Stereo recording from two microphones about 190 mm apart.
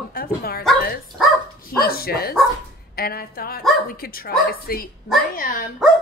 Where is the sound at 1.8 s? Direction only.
55° left (ahead or behind).